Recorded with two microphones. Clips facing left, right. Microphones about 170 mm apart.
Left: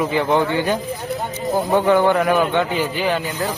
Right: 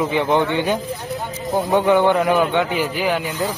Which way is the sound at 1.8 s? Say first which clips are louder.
Even; 15° right (ahead or behind).